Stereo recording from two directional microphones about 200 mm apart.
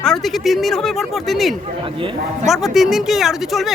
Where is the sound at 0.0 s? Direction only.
Centre (ahead or behind).